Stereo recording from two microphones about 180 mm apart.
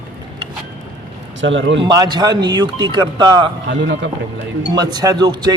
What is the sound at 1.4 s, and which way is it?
Speech, 90° right.